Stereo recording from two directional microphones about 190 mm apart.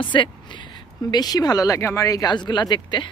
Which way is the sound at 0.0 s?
25° left (ahead or behind).